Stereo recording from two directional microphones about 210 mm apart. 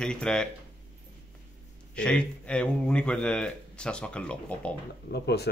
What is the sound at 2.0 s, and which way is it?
Speech, 5° left (ahead or behind).